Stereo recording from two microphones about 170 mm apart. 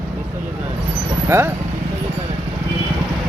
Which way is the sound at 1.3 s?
15° right (ahead or behind).